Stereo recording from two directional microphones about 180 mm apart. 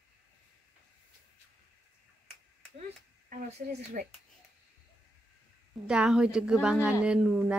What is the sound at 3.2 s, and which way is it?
Speech, 45° right (ahead or behind).